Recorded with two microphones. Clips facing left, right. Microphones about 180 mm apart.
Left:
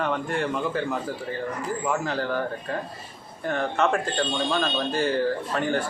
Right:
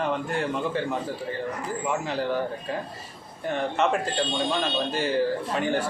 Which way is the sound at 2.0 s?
Centre (ahead or behind).